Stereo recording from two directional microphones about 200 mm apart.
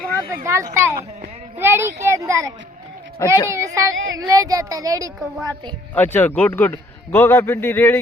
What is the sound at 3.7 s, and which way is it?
Speech, 80° right.